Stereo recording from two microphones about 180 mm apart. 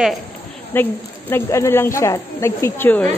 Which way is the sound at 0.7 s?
10° left (ahead or behind).